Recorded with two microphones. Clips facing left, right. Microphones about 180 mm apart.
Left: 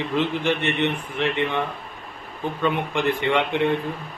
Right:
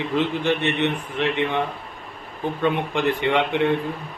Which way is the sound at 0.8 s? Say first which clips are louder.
Right 1 dB; 15° right (ahead or behind).